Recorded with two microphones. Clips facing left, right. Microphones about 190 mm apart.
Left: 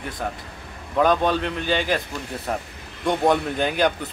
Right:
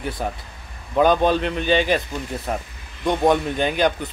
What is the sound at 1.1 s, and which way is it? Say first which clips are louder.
Speech: right 3 dB; 20° right (ahead or behind).